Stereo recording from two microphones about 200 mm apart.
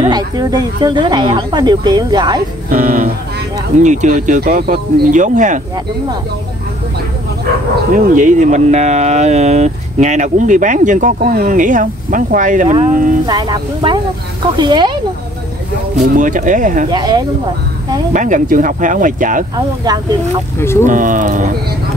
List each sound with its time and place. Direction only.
0.1 s speech: 20° right (ahead or behind)
2.7 s speech: 40° right (ahead or behind)
7.9 s speech: 45° right (ahead or behind)
13.3 s speech: 20° right (ahead or behind)
16.2 s speech: 40° right (ahead or behind)
16.9 s speech: 20° right (ahead or behind)
18.1 s speech: 40° right (ahead or behind)
19.5 s speech: 20° right (ahead or behind)
20.5 s speech: 15° left (ahead or behind)
20.8 s speech: 40° right (ahead or behind)